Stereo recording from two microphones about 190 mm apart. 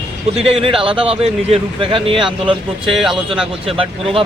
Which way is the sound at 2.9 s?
Centre (ahead or behind).